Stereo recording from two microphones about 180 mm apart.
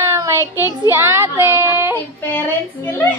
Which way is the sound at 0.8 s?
15° right (ahead or behind).